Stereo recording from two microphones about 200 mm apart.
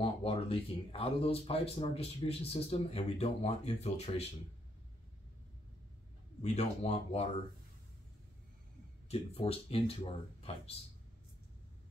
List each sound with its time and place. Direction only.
0.0 s speech: 30° left (ahead or behind)
6.4 s speech: 30° left (ahead or behind)
9.1 s speech: 30° left (ahead or behind)